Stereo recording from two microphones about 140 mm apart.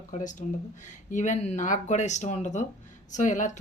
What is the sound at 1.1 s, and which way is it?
Speech, 60° left (ahead or behind).